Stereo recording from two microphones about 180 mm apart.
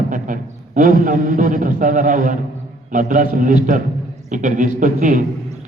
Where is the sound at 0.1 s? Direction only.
45° right (ahead or behind).